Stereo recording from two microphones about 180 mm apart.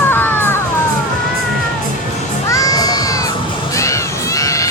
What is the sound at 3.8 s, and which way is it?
Children shouting, 15° left (ahead or behind).